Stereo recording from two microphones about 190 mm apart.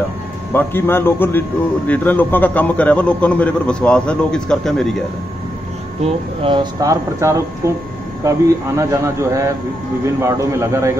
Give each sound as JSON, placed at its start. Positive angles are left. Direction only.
{"t": 0.5, "sound": "a man's voice", "side_deg": 10}
{"t": 6.0, "sound": "speech", "side_deg": -25}